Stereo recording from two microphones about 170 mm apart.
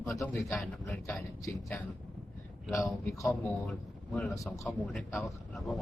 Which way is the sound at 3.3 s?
5° left (ahead or behind).